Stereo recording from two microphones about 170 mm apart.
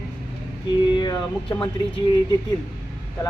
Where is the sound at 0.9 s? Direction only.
25° left (ahead or behind).